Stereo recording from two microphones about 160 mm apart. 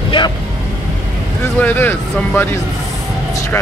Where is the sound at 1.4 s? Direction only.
10° left (ahead or behind).